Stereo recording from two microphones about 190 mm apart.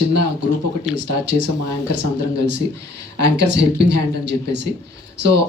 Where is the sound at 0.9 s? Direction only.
65° right (ahead or behind).